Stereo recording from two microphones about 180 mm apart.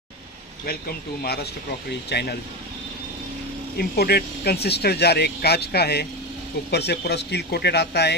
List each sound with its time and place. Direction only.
0.7 s speech: 60° left (ahead or behind)
3.7 s speech: 60° left (ahead or behind)